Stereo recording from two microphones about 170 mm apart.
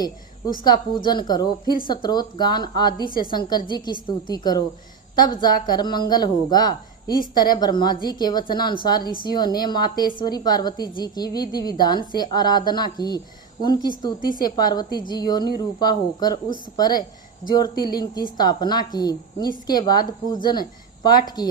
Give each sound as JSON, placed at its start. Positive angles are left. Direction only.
{"t": 0.6, "sound": "speech", "side_deg": 25}